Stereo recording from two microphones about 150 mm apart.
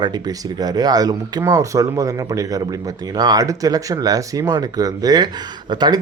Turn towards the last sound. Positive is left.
turn(degrees=-30)  # may be behind; listen again after turning